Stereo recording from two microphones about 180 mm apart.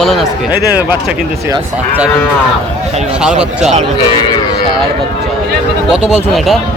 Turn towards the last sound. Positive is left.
turn(degrees=0)  # may be behind; listen again after turning